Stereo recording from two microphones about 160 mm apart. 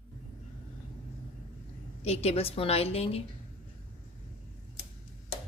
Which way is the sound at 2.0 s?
40° left (ahead or behind).